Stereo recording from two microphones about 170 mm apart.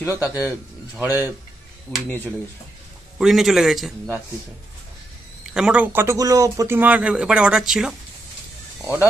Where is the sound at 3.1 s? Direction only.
Centre (ahead or behind).